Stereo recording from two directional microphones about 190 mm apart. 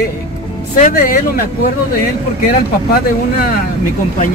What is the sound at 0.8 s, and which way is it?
Speech, 45° left (ahead or behind).